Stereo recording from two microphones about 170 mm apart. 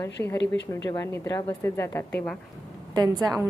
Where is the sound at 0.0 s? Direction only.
15° left (ahead or behind).